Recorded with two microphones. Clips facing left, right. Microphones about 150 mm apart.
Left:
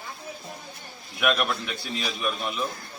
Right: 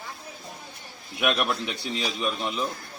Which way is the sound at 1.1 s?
20° right (ahead or behind).